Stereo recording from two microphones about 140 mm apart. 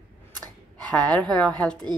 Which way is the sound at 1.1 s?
10° left (ahead or behind).